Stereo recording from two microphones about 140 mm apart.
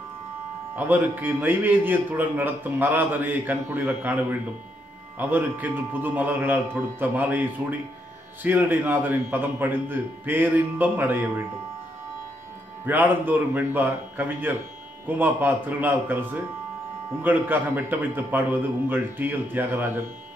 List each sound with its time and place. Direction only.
0.7 s a man's voice: 15° right (ahead or behind)
12.8 s a man's voice: 15° right (ahead or behind)